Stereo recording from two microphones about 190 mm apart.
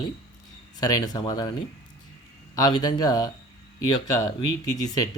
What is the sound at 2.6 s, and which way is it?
Speech, 20° left (ahead or behind).